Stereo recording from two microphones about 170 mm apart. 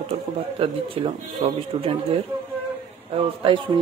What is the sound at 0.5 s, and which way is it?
Speech, 35° right (ahead or behind).